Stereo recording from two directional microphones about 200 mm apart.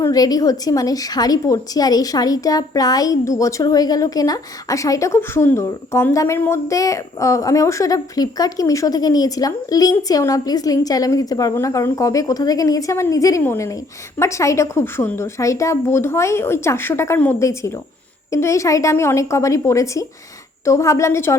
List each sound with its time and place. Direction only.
0.0 s a woman's voice: 20° left (ahead or behind)